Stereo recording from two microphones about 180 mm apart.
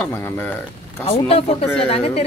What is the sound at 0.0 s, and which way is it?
Speech, 10° left (ahead or behind).